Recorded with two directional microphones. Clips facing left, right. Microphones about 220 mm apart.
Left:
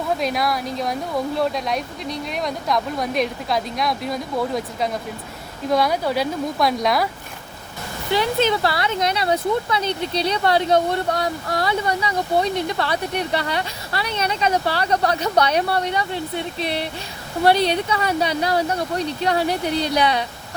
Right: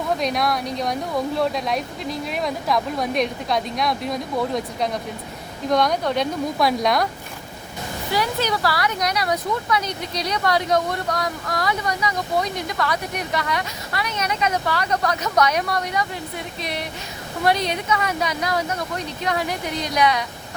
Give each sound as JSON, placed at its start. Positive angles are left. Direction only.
{"t": 0.2, "sound": "speech", "side_deg": 0}
{"t": 8.1, "sound": "speech", "side_deg": 25}